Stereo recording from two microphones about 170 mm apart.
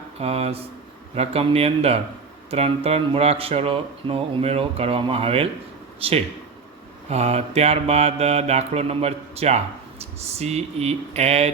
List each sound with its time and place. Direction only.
0.2 s speech: 35° right (ahead or behind)